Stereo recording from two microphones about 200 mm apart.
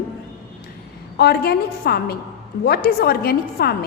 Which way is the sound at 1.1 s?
55° left (ahead or behind).